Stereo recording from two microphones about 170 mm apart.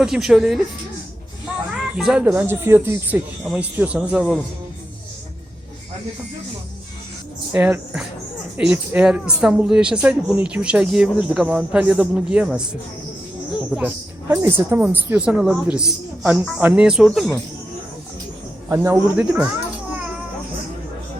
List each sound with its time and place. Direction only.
0.0 s a woman's voice: centre (ahead or behind)
2.0 s a woman's voice: 5° right (ahead or behind)
7.5 s a woman's voice: 5° right (ahead or behind)
13.7 s a woman's voice: 5° right (ahead or behind)
18.7 s a woman's voice: 15° right (ahead or behind)